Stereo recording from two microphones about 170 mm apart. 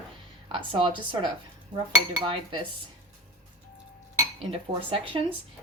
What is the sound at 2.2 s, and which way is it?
Speech, 30° right (ahead or behind).